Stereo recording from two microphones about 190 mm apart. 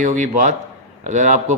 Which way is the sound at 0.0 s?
40° right (ahead or behind).